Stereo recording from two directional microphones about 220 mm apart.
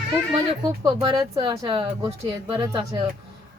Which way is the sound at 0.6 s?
20° right (ahead or behind).